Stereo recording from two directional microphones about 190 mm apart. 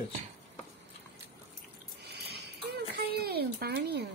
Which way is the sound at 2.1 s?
60° right (ahead or behind).